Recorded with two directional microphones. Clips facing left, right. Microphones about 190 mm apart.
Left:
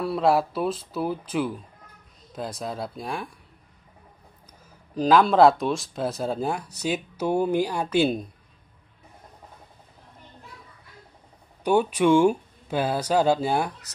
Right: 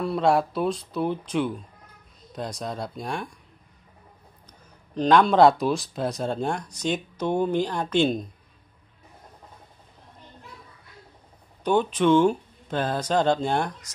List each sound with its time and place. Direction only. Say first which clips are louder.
0.0 s speech: even; 5° left (ahead or behind)
4.9 s speech: even; 5° left (ahead or behind)
11.6 s speech: left 1 dB; 10° left (ahead or behind)